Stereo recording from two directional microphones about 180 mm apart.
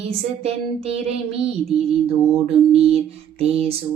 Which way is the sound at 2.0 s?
30° right (ahead or behind).